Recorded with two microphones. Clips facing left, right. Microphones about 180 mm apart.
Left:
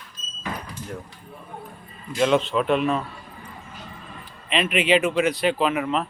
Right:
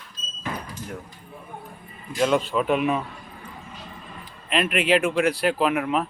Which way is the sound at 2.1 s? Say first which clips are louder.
Left 1 dB; centre (ahead or behind).